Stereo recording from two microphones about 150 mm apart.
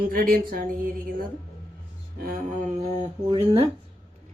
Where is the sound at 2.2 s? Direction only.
65° right (ahead or behind).